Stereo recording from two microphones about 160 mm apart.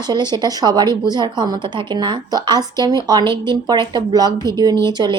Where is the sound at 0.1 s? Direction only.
25° right (ahead or behind).